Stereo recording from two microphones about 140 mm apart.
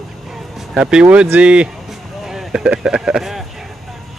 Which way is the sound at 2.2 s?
Centre (ahead or behind).